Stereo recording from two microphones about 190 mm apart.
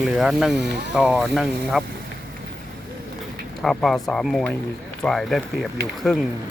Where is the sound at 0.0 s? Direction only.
Centre (ahead or behind).